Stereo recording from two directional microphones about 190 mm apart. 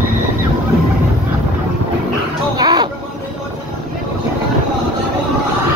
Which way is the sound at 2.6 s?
20° right (ahead or behind).